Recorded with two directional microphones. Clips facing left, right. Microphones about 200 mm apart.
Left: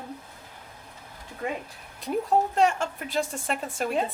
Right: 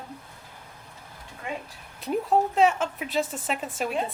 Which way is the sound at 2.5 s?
5° right (ahead or behind).